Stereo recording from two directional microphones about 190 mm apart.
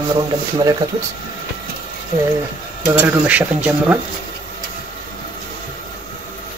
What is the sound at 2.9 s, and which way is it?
Speech, 5° right (ahead or behind).